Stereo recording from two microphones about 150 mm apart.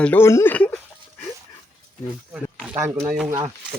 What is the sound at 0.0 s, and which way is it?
Speech, 15° left (ahead or behind).